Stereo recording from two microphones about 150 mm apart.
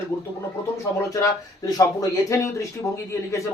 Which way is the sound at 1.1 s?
25° left (ahead or behind).